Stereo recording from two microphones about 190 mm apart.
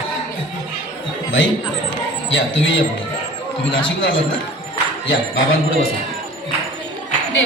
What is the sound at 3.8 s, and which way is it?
Speech, 90° left.